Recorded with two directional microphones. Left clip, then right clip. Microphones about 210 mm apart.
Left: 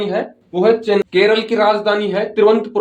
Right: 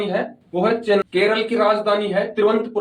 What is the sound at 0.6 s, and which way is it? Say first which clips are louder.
Speech: left 4 dB; 45° left (ahead or behind).